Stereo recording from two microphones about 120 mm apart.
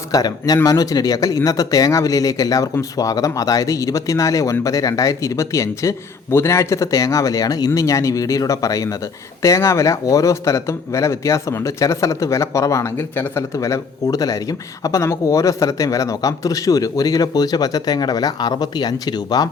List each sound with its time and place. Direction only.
0.1 s a man's voice: 30° left (ahead or behind)